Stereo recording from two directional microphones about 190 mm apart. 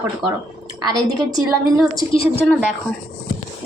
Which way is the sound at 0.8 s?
20° right (ahead or behind).